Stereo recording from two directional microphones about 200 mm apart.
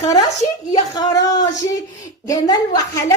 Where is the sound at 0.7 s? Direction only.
20° left (ahead or behind).